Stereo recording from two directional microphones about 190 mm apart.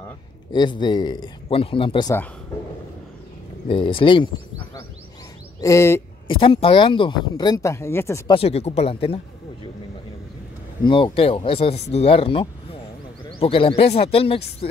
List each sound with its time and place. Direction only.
0.5 s speech: 25° left (ahead or behind)
3.6 s speech: 25° left (ahead or behind)
5.6 s speech: 15° left (ahead or behind)
6.2 s speech: 25° left (ahead or behind)
8.4 s speech: 35° left (ahead or behind)
10.8 s speech: 25° left (ahead or behind)